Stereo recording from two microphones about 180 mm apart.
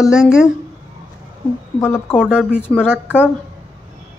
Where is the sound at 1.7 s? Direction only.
10° left (ahead or behind).